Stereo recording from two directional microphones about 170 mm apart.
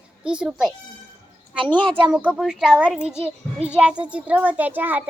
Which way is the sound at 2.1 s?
10° right (ahead or behind).